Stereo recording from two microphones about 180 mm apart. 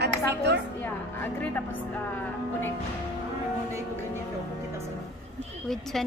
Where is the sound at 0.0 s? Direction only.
65° right (ahead or behind).